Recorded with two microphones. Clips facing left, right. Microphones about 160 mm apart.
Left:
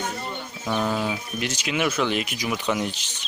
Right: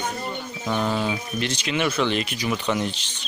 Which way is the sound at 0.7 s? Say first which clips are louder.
Right 1 dB; 5° left (ahead or behind).